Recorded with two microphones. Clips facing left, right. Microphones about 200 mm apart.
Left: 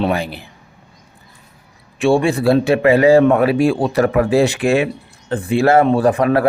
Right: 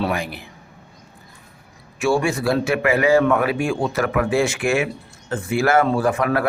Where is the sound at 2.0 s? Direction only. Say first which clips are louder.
Left 5 dB; 30° left (ahead or behind).